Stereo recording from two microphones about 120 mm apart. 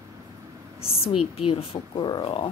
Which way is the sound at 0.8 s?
55° left (ahead or behind).